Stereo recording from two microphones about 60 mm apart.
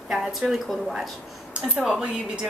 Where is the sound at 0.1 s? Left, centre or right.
Centre.